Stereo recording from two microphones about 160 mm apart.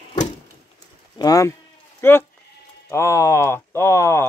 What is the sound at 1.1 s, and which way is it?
Sheep, 20° left (ahead or behind).